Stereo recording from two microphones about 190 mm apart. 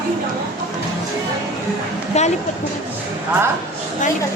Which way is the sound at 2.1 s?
35° left (ahead or behind).